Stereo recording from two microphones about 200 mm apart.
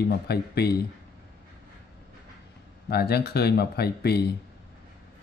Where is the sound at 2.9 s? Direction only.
55° left (ahead or behind).